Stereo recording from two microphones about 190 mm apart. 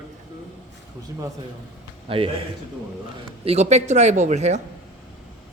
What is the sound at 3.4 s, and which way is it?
A man's voice, 35° right (ahead or behind).